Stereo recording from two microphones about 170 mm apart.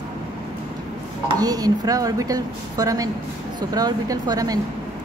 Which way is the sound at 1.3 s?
20° right (ahead or behind).